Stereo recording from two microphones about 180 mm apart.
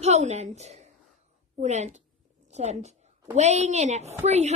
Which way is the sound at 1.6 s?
40° right (ahead or behind).